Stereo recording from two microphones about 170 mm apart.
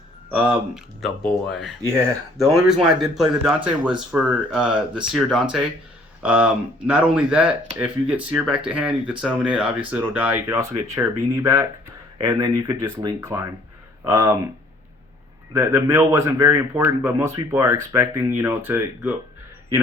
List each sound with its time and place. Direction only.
0.3 s speech: 5° right (ahead or behind)
1.9 s speech: 15° right (ahead or behind)
2.6 s speech: 5° right (ahead or behind)
15.5 s speech: 15° right (ahead or behind)